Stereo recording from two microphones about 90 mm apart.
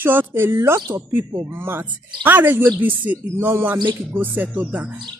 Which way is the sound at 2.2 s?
20° right (ahead or behind).